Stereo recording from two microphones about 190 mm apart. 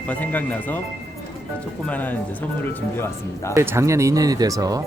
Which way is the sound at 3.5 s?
15° right (ahead or behind).